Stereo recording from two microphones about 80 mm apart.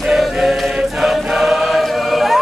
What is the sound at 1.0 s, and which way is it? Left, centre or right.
Choir, centre.